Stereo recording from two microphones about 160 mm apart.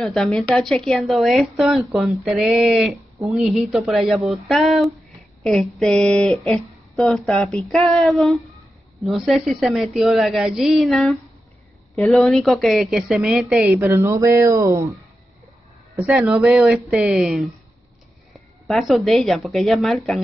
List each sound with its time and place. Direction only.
0.0 s speech: 5° left (ahead or behind)
13.7 s speech: 15° right (ahead or behind)
16.0 s speech: 5° right (ahead or behind)